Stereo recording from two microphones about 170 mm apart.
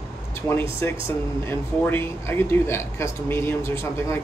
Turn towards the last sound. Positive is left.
turn(degrees=15)  # may be behind; listen again after turning